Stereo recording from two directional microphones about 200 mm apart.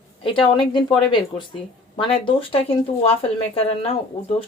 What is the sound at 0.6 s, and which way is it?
Speech, 25° left (ahead or behind).